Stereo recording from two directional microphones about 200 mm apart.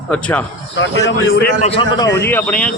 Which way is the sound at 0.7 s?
65° left (ahead or behind).